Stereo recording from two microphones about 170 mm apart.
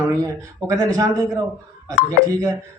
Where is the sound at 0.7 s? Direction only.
20° right (ahead or behind).